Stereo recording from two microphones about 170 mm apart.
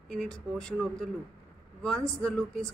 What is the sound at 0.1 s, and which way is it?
A man's voice, 5° left (ahead or behind).